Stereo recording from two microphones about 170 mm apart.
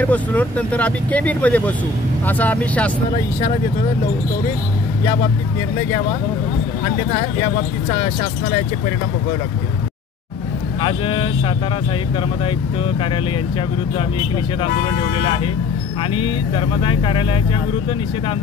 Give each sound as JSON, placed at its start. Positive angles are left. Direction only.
{"t": 0.0, "sound": "speech", "side_deg": 10}
{"t": 10.8, "sound": "speech", "side_deg": 30}
{"t": 16.2, "sound": "speech", "side_deg": 30}